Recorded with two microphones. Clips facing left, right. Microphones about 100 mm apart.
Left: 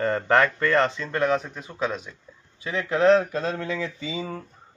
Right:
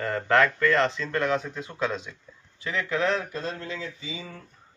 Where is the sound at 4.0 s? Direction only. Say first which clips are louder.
Left 7 dB; 35° left (ahead or behind).